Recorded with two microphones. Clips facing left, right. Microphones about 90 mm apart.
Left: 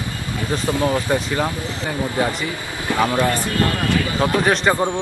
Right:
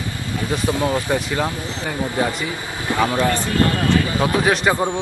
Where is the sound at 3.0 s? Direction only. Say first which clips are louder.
Even; 10° left (ahead or behind).